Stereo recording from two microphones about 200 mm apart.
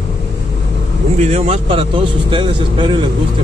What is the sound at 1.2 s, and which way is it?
Speech, 30° right (ahead or behind).